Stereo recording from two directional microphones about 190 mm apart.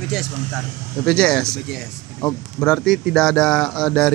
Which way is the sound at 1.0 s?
5° left (ahead or behind).